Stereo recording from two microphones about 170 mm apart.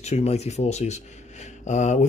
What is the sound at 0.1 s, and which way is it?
Speech, 40° left (ahead or behind).